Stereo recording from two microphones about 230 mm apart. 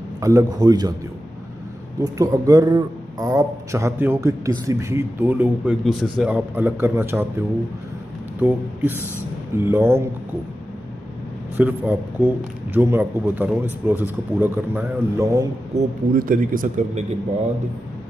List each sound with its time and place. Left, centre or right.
0.2 s a man's voice: centre
2.0 s a man's voice: centre
11.5 s a man's voice: centre
16.2 s speech: right